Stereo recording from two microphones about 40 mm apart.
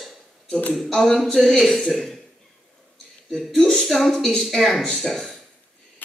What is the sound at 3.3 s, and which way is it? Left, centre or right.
Speech, centre.